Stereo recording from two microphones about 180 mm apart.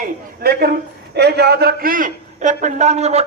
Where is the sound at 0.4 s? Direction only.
60° right (ahead or behind).